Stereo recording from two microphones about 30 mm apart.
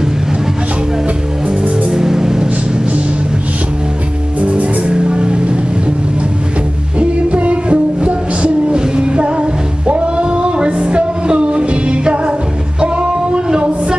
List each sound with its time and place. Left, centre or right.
1.9 s music: centre
4.4 s music: right
4.9 s music: right
7.0 s music: right
12.8 s singing: right